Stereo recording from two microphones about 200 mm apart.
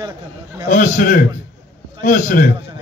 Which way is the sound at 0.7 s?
40° left (ahead or behind).